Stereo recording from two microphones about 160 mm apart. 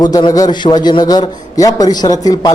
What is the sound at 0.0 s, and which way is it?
A man's voice, 25° left (ahead or behind).